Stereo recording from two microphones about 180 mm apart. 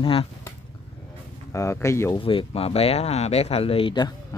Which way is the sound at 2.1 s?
30° left (ahead or behind).